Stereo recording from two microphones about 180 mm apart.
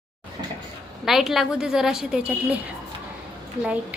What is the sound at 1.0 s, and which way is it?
A woman's voice, centre (ahead or behind).